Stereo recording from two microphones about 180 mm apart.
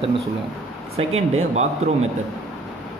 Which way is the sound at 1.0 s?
35° right (ahead or behind).